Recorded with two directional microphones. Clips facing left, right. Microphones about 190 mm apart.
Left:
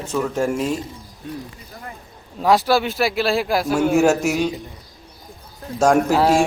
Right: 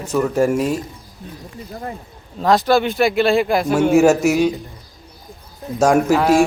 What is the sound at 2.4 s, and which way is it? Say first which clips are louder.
A man's voice: right 2 dB; centre (ahead or behind).